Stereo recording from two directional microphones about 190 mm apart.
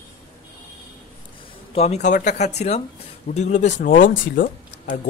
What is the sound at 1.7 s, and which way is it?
Speech, 35° left (ahead or behind).